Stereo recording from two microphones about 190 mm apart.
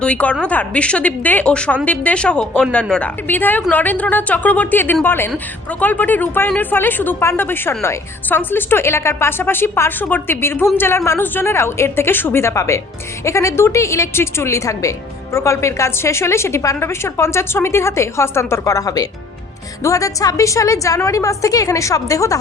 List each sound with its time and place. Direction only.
0.0 s a woman's voice: 5° left (ahead or behind)